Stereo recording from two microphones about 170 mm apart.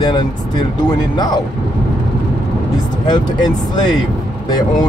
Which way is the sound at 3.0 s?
25° left (ahead or behind).